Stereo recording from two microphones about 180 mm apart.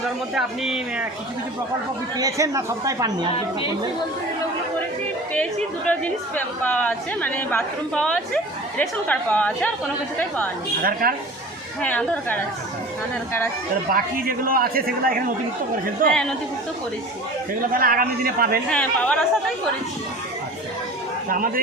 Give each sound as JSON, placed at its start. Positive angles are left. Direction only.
{"t": 0.3, "sound": "speech", "side_deg": -5}
{"t": 2.1, "sound": "speech", "side_deg": -20}
{"t": 5.9, "sound": "a woman's voice", "side_deg": 10}
{"t": 11.0, "sound": "speech", "side_deg": -55}
{"t": 11.8, "sound": "a woman's voice", "side_deg": 10}
{"t": 13.9, "sound": "speech", "side_deg": -55}
{"t": 17.6, "sound": "speech", "side_deg": -50}
{"t": 18.7, "sound": "a woman's voice", "side_deg": 5}
{"t": 21.2, "sound": "speech", "side_deg": -50}